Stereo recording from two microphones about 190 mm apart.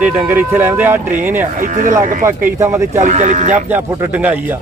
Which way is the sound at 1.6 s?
40° right (ahead or behind).